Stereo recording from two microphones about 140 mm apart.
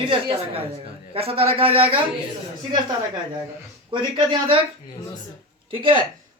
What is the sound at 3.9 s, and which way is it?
Speech, 35° right (ahead or behind).